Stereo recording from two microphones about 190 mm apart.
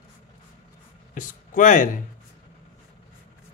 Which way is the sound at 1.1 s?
45° left (ahead or behind).